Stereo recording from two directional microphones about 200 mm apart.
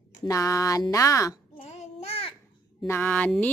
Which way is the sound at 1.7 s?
35° left (ahead or behind).